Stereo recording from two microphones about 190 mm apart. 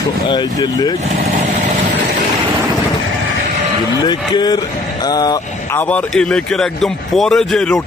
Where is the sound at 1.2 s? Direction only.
45° right (ahead or behind).